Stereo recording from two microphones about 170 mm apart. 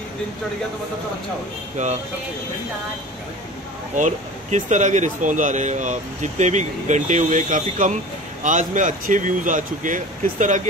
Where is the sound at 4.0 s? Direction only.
45° right (ahead or behind).